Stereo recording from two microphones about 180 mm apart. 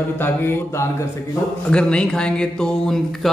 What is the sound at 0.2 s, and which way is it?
A man's voice, 15° left (ahead or behind).